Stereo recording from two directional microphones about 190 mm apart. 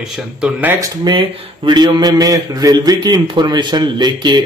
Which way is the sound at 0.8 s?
25° right (ahead or behind).